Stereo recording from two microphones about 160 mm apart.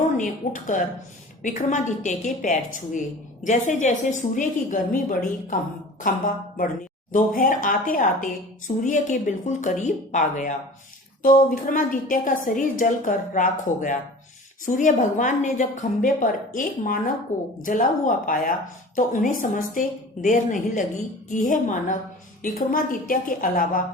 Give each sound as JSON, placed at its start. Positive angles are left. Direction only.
{"t": 0.2, "sound": "a woman's voice", "side_deg": 55}